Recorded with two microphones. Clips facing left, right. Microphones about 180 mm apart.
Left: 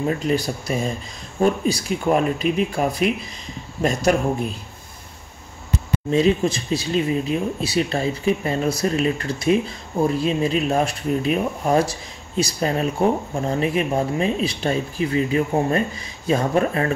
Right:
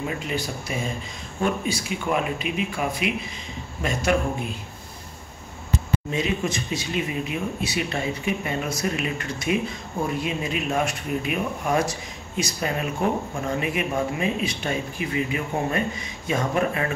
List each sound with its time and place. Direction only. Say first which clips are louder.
0.0 s speech: left 7 dB; 40° left (ahead or behind)
6.1 s speech: left 10 dB; 30° left (ahead or behind)